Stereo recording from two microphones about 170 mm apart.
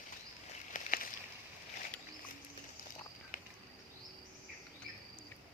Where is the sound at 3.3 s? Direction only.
50° left (ahead or behind).